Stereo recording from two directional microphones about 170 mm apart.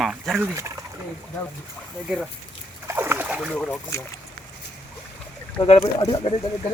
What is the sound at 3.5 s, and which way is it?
Speech, 10° left (ahead or behind).